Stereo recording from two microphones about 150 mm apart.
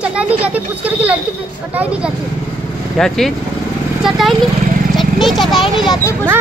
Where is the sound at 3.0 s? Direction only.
Centre (ahead or behind).